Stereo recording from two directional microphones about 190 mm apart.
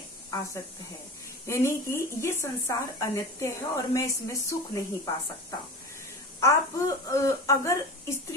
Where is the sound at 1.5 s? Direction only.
15° left (ahead or behind).